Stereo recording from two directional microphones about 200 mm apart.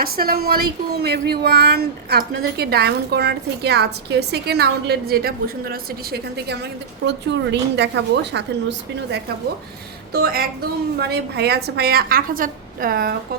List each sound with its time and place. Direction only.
0.0 s speech: 50° right (ahead or behind)
10.1 s speech: 50° right (ahead or behind)